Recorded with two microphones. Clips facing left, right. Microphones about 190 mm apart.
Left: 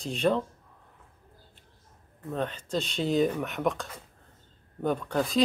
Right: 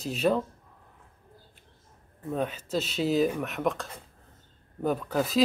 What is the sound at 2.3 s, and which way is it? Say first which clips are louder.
Speech: right 1 dB; 5° right (ahead or behind).